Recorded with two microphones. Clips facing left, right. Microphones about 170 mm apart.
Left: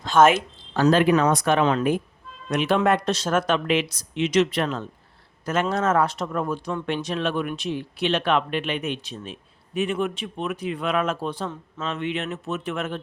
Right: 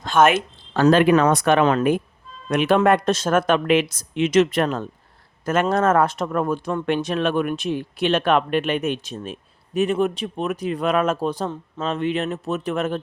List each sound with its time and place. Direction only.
0.7 s speech: 65° right (ahead or behind); by 13.0 s 40° right (ahead or behind)